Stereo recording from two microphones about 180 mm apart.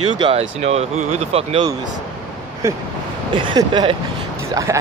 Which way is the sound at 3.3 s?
25° right (ahead or behind).